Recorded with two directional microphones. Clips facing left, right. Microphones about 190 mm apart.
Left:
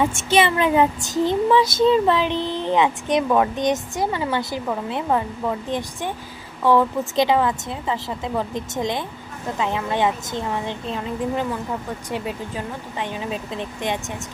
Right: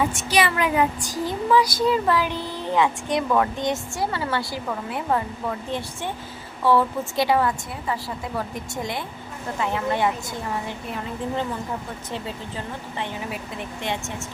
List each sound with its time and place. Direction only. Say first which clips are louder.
0.1 s child singing: left 4 dB; 25° left (ahead or behind)
6.7 s child singing: left 2 dB; 15° left (ahead or behind)
12.1 s speech: left 4 dB; 15° left (ahead or behind)